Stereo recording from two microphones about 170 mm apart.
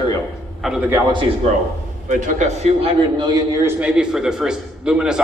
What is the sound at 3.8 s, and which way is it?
A man's voice, 5° right (ahead or behind).